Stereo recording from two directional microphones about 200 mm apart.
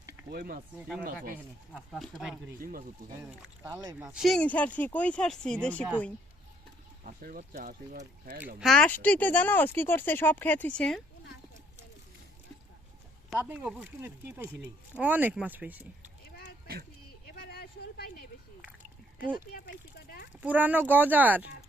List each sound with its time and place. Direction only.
0.3 s speech: 50° right (ahead or behind)
1.7 s speech: centre (ahead or behind)
2.6 s speech: 45° right (ahead or behind)
3.4 s speech: 10° right (ahead or behind)
7.0 s speech: 45° right (ahead or behind)
8.5 s speech: centre (ahead or behind)
13.3 s speech: 10° right (ahead or behind)
17.3 s a sound: 45° left (ahead or behind)
19.5 s a sound: 50° left (ahead or behind)
20.4 s speech: 10° right (ahead or behind)